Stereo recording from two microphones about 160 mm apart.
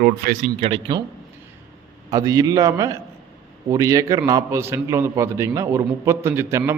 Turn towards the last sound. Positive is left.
turn(degrees=-15)  # may be behind; listen again after turning